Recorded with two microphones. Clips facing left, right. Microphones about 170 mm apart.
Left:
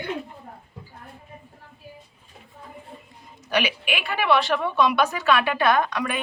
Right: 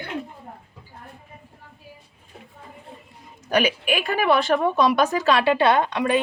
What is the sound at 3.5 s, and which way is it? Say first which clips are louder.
A woman's voice: right 4 dB; 45° right (ahead or behind).